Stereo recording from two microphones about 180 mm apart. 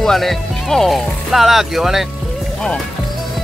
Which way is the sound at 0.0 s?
Centre (ahead or behind).